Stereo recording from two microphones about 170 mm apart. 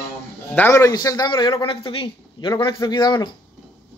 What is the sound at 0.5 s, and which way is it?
A man's voice, 15° left (ahead or behind).